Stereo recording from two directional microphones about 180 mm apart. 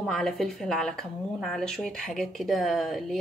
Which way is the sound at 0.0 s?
Centre (ahead or behind).